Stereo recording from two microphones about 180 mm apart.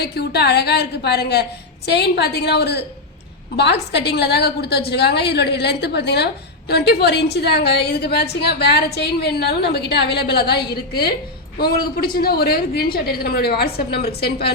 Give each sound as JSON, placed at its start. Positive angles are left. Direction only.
{"t": 0.0, "sound": "a woman's voice", "side_deg": 65}